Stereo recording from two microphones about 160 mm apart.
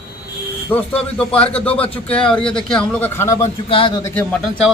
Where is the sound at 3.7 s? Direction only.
30° left (ahead or behind).